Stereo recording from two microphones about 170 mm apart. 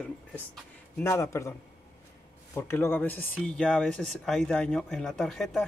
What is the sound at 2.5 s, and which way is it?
Speech, 15° left (ahead or behind).